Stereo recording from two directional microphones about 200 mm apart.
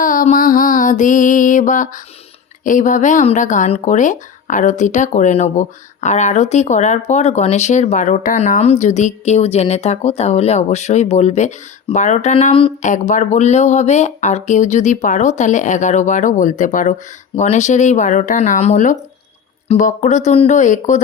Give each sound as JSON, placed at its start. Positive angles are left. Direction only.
{"t": 0.0, "sound": "mantra", "side_deg": 40}
{"t": 2.6, "sound": "speech", "side_deg": 40}